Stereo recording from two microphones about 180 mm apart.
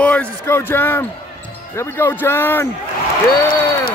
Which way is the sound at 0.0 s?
5° left (ahead or behind).